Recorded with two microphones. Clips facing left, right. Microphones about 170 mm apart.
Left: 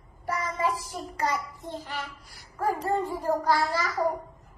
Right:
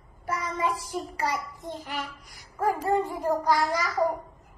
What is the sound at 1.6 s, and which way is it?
A child's voice, 20° right (ahead or behind).